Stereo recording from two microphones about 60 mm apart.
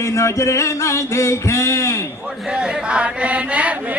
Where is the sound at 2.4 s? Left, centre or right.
Centre.